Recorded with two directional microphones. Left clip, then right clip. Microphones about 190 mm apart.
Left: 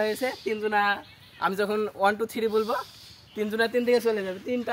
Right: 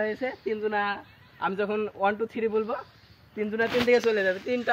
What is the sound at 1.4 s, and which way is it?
A man's voice, 30° left (ahead or behind).